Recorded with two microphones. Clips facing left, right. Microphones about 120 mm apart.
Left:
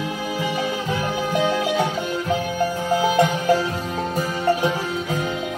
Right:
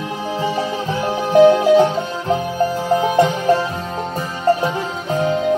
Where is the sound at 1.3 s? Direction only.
30° right (ahead or behind).